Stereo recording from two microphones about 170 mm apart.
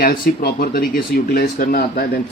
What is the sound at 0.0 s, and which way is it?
Speech, 55° left (ahead or behind).